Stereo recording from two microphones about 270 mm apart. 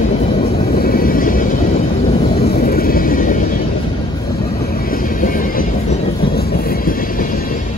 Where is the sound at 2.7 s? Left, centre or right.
Left.